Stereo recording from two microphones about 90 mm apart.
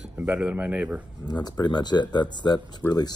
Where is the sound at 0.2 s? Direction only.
15° right (ahead or behind).